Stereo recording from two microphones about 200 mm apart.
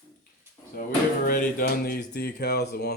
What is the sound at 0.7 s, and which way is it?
Speech, 50° left (ahead or behind).